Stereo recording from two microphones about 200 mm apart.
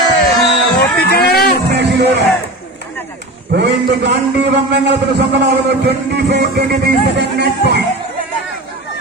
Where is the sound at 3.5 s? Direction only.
55° right (ahead or behind).